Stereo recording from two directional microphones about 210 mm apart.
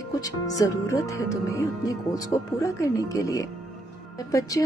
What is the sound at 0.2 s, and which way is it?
Speech, 15° left (ahead or behind).